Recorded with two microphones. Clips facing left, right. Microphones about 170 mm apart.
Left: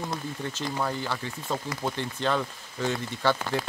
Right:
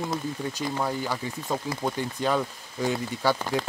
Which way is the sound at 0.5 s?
10° right (ahead or behind).